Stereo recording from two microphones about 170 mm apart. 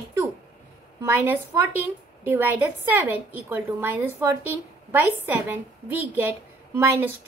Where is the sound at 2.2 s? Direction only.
10° right (ahead or behind).